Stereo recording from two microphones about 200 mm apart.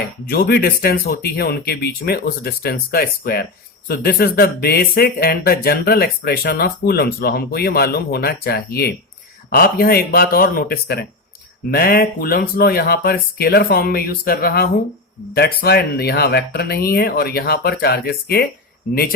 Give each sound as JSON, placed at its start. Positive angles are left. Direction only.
{"t": 0.3, "sound": "speech", "side_deg": 50}